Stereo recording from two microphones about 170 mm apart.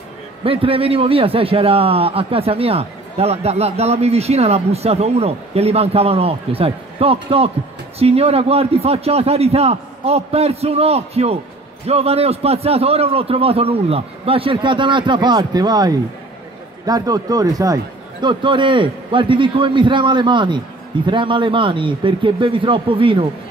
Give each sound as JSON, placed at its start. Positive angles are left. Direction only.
{"t": 0.4, "sound": "a man's voice", "side_deg": -35}